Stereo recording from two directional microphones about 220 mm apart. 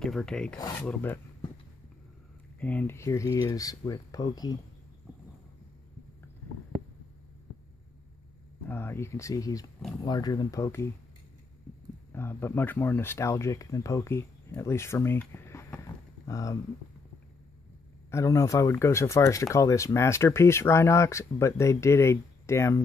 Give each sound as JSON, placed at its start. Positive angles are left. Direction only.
{"t": 0.0, "sound": "speech", "side_deg": 5}
{"t": 2.6, "sound": "speech", "side_deg": 5}
{"t": 8.6, "sound": "speech", "side_deg": 10}
{"t": 12.1, "sound": "speech", "side_deg": 10}
{"t": 18.1, "sound": "speech", "side_deg": 15}